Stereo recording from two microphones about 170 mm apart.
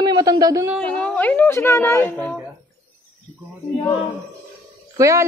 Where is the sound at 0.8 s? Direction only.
5° left (ahead or behind).